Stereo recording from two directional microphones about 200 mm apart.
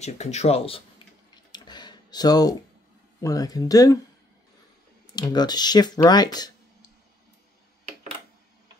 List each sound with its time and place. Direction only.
0.0 s speech: 35° left (ahead or behind)
1.5 s a sound: 20° left (ahead or behind)
3.2 s speech: 15° left (ahead or behind)
5.1 s speech: 20° left (ahead or behind)